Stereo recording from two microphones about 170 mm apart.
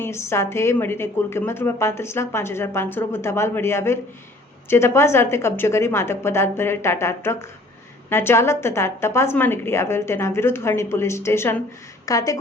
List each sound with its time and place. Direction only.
0.0 s a woman's voice: 15° left (ahead or behind)